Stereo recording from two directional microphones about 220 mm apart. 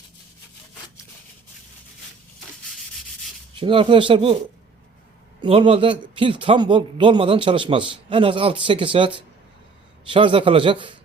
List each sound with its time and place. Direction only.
3.5 s a man's voice: 25° right (ahead or behind)
5.4 s a man's voice: 25° right (ahead or behind)